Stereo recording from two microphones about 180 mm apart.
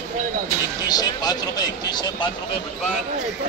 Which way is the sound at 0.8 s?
20° left (ahead or behind).